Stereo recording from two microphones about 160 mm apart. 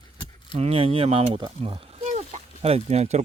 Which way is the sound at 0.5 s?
40° right (ahead or behind).